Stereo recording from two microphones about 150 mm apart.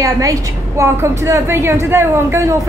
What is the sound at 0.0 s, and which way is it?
A woman's voice, 20° right (ahead or behind).